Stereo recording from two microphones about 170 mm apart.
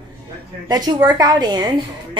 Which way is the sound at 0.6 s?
20° right (ahead or behind).